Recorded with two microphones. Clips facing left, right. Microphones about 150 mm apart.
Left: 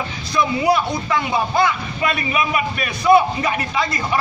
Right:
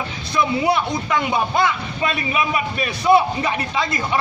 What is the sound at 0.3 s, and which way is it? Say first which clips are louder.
Speech: left 1 dB; 25° right (ahead or behind).